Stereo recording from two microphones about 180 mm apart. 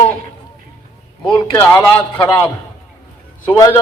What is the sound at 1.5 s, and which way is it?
Speech, 10° left (ahead or behind).